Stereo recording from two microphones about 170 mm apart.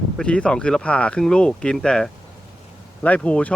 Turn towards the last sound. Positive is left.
turn(degrees=10)  # may be behind; listen again after turning